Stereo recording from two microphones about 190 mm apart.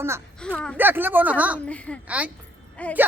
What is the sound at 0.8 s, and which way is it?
Speech, 10° right (ahead or behind).